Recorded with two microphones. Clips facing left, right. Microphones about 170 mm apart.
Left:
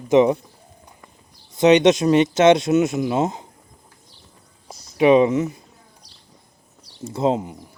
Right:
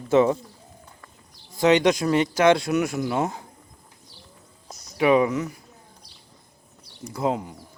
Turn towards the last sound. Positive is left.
turn(degrees=25)  # may be behind; listen again after turning